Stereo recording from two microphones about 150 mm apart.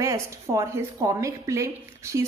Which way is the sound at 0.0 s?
20° right (ahead or behind).